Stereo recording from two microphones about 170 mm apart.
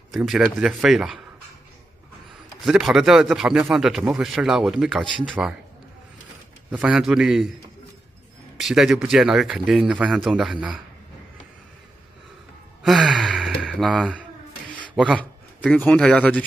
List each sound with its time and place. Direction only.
0.1 s speech: centre (ahead or behind)
2.6 s speech: centre (ahead or behind)
6.7 s speech: 5° right (ahead or behind)
8.5 s speech: centre (ahead or behind)
12.8 s speech: centre (ahead or behind)
15.1 s speech: 10° left (ahead or behind)